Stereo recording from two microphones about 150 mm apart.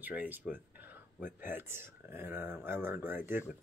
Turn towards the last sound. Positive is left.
turn(degrees=-15)  # may be behind; listen again after turning